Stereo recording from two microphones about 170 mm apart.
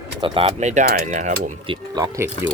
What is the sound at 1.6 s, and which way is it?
Speech, 25° right (ahead or behind).